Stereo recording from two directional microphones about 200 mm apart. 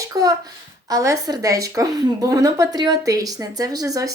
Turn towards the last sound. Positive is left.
turn(degrees=-15)  # may be behind; listen again after turning